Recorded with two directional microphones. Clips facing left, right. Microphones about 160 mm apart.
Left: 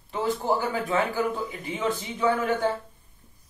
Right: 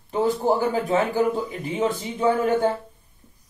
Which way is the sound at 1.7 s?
40° right (ahead or behind).